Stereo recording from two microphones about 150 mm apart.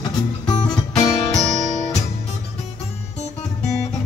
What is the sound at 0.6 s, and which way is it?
Guitar, 25° left (ahead or behind).